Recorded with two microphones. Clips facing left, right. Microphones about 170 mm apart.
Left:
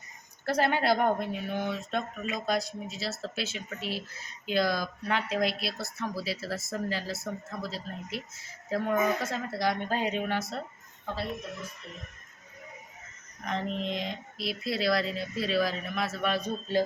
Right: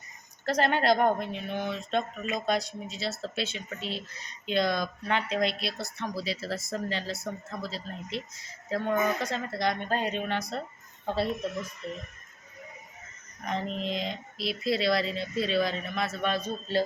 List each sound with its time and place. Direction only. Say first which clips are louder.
0.4 s speech: right 1 dB; 10° left (ahead or behind)
11.0 s speech: right 6 dB; 25° right (ahead or behind)
13.4 s speech: even; centre (ahead or behind); by 16.8 s 15° left (ahead or behind)